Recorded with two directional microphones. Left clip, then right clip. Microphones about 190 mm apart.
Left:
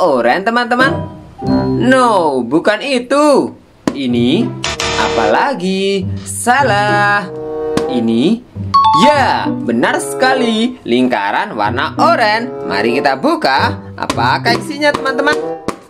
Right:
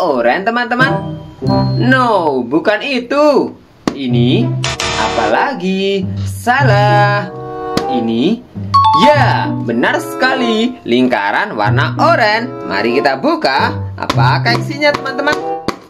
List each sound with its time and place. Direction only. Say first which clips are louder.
0.0 s music: left 1 dB; 20° left (ahead or behind)
4.6 s music: left 1 dB; centre (ahead or behind)
5.3 s music: left 1 dB; 25° left (ahead or behind)
8.9 s speech: even; 20° left (ahead or behind)